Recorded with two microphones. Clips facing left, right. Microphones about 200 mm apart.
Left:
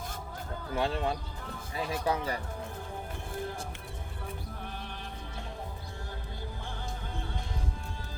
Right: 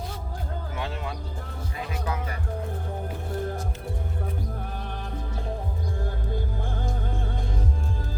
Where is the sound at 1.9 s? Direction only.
30° left (ahead or behind).